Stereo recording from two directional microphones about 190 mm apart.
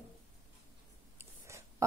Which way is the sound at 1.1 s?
15° right (ahead or behind).